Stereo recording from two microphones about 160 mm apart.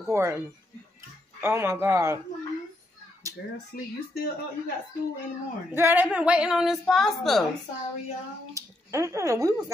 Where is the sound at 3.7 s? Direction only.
75° left (ahead or behind).